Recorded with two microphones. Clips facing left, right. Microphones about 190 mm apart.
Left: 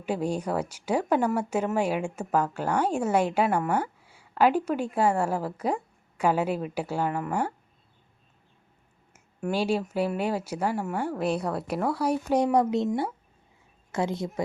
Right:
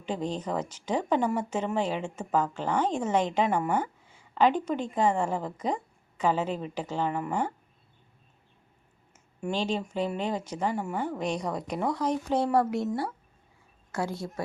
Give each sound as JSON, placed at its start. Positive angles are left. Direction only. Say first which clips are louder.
{"t": 0.0, "sound": "speech", "louder": "left 3 dB", "side_deg": 10}
{"t": 9.1, "sound": "a woman's voice", "louder": "left 3 dB", "side_deg": 10}